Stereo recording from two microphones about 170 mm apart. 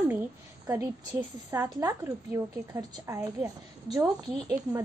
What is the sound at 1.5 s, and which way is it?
A woman's voice, 20° right (ahead or behind).